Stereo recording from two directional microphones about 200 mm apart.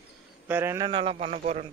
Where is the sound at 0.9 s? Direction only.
25° right (ahead or behind).